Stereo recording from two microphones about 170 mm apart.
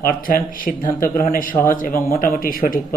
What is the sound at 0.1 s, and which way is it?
Speech, 55° left (ahead or behind).